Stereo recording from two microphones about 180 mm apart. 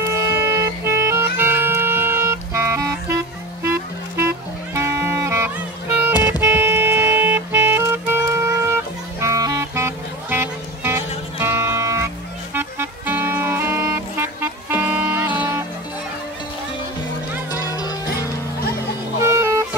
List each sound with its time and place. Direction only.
0.3 s music: 15° right (ahead or behind)
4.2 s music: 15° right (ahead or behind)
6.4 s clarinet: 15° right (ahead or behind)
9.2 s music: 15° right (ahead or behind)
17.5 s music: 20° left (ahead or behind)
19.1 s music: 15° right (ahead or behind)